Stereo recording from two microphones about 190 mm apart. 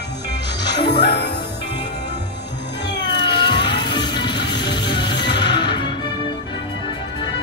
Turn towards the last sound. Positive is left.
turn(degrees=25)  # may be behind; listen again after turning